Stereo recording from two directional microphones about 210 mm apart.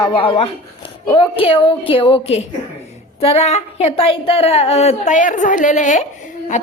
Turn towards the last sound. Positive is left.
turn(degrees=35)  # may be behind; listen again after turning